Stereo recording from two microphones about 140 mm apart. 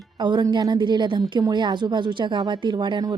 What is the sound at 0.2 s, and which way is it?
Speech, 30° right (ahead or behind).